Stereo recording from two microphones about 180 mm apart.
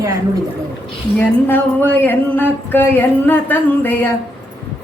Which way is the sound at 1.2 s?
10° left (ahead or behind).